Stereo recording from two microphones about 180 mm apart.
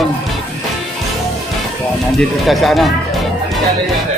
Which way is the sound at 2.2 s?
Centre (ahead or behind).